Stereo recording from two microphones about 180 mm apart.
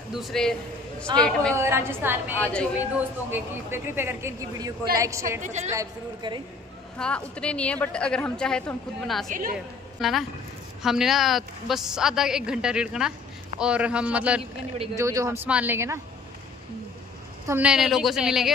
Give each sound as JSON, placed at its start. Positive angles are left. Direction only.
{"t": 0.1, "sound": "a woman's voice", "side_deg": 0}
{"t": 1.5, "sound": "speech", "side_deg": -15}
{"t": 5.4, "sound": "a woman's voice", "side_deg": -40}
{"t": 5.7, "sound": "speech", "side_deg": -20}
{"t": 7.0, "sound": "a woman's voice", "side_deg": 5}
{"t": 9.3, "sound": "a woman's voice", "side_deg": -50}
{"t": 9.9, "sound": "a woman's voice", "side_deg": 0}
{"t": 17.5, "sound": "a woman's voice", "side_deg": -5}